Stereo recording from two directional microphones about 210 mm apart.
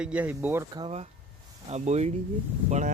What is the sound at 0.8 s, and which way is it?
Speech, 30° right (ahead or behind).